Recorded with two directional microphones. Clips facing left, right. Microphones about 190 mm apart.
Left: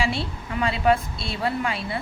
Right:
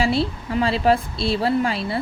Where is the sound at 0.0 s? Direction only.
35° right (ahead or behind).